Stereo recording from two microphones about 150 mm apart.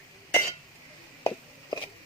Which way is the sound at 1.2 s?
25° left (ahead or behind).